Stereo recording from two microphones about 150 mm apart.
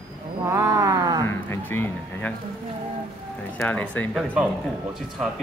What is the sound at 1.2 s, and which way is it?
Speech, 15° left (ahead or behind).